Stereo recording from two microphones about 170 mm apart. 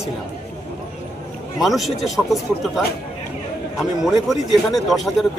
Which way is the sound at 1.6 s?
Centre (ahead or behind).